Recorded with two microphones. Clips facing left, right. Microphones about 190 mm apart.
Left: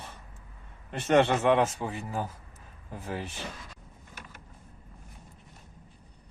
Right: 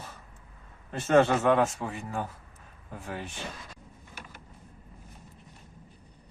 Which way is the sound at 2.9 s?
30° left (ahead or behind).